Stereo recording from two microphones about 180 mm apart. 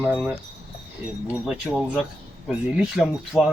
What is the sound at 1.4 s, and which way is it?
Speech, 5° right (ahead or behind).